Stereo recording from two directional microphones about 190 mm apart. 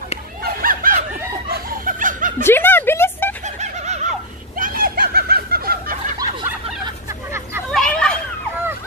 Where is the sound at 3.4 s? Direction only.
35° right (ahead or behind).